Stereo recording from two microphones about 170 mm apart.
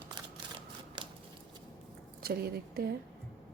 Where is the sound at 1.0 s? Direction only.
30° right (ahead or behind).